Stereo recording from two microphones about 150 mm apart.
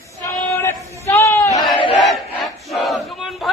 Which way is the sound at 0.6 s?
15° left (ahead or behind).